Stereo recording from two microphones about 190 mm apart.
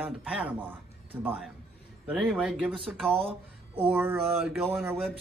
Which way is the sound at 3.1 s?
30° right (ahead or behind).